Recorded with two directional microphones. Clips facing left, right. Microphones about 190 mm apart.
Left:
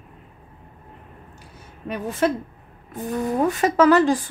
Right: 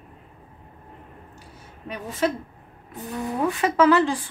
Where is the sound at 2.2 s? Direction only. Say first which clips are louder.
Left 2 dB; 50° left (ahead or behind).